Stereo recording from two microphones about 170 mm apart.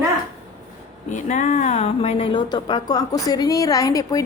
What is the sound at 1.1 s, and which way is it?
Speech, 45° left (ahead or behind).